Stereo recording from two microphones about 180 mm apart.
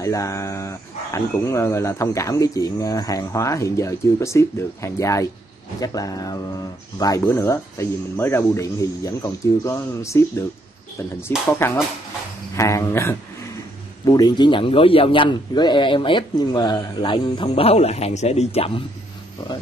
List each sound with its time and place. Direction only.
0.0 s a man's voice: 15° left (ahead or behind)
11.5 s a man's voice: 15° left (ahead or behind); by 18.9 s 35° left (ahead or behind)